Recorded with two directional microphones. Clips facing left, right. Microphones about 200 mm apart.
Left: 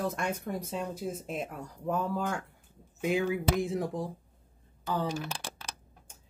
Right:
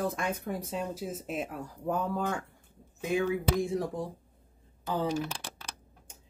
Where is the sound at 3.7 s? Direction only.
Centre (ahead or behind).